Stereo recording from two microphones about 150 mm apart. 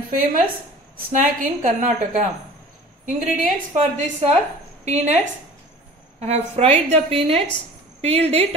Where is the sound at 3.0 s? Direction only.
65° right (ahead or behind); by 5.2 s 50° right (ahead or behind).